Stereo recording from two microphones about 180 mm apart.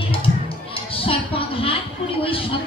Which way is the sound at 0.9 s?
30° left (ahead or behind).